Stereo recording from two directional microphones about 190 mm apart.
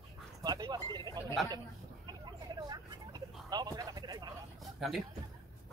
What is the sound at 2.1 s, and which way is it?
Vehicle, 20° right (ahead or behind).